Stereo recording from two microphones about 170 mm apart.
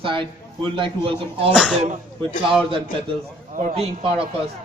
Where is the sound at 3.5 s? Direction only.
35° right (ahead or behind).